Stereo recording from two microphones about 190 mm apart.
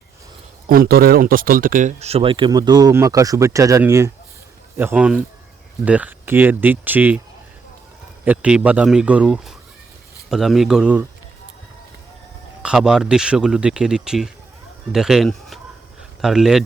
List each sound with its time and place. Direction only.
0.7 s speech: 50° right (ahead or behind); by 7.2 s 10° right (ahead or behind)
8.2 s speech: 5° right (ahead or behind)
12.6 s speech: 5° right (ahead or behind)